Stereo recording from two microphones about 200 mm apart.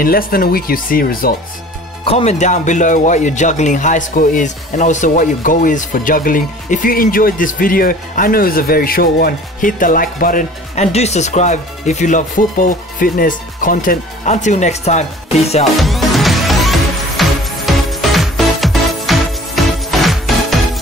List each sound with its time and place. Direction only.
0.0 s speech: 45° left (ahead or behind)
2.0 s speech: 30° left (ahead or behind)
15.8 s music: centre (ahead or behind)